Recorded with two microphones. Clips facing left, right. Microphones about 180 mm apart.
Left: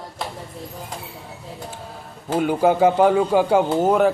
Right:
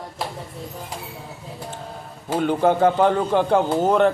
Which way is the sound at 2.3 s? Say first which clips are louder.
Left 1 dB; 10° left (ahead or behind).